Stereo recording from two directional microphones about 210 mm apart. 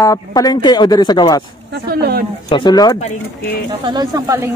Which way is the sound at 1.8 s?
50° right (ahead or behind).